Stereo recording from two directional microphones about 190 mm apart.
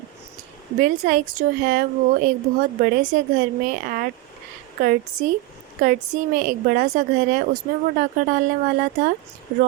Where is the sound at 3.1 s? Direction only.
45° right (ahead or behind).